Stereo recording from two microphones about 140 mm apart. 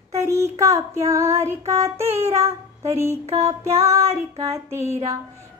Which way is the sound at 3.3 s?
20° right (ahead or behind).